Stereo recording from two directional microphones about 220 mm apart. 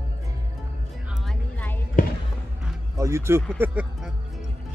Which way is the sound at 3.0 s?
15° right (ahead or behind).